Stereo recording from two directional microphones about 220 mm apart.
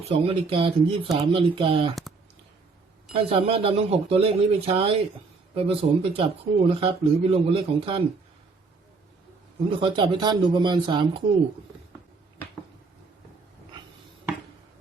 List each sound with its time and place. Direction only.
0.0 s speech: 25° right (ahead or behind)
3.1 s speech: 25° right (ahead or behind)
9.6 s speech: 25° right (ahead or behind)